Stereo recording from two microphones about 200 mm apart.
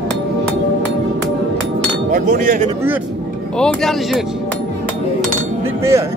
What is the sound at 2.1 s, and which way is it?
Speech, 45° right (ahead or behind).